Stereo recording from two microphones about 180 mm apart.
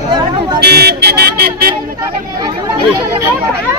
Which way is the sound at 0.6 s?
60° right (ahead or behind).